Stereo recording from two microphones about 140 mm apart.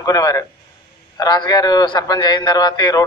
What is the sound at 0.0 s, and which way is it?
A man's voice, 25° left (ahead or behind).